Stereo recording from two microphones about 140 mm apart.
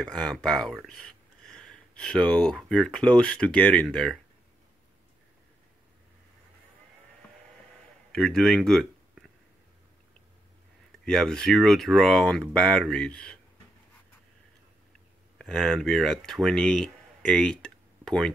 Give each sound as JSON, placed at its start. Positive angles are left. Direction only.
{"t": 0.0, "sound": "speech", "side_deg": 5}
{"t": 8.1, "sound": "speech", "side_deg": 5}
{"t": 11.1, "sound": "speech", "side_deg": 5}
{"t": 15.3, "sound": "speech", "side_deg": 5}